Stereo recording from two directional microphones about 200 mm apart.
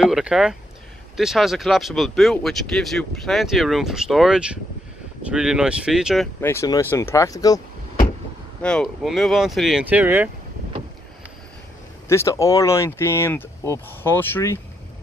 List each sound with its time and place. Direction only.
0.0 s speech: 5° right (ahead or behind)
6.4 s speech: 15° left (ahead or behind)
8.6 s speech: centre (ahead or behind)
12.1 s speech: 15° left (ahead or behind)